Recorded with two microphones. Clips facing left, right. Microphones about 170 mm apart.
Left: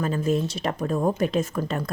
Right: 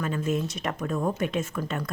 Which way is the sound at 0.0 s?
35° left (ahead or behind).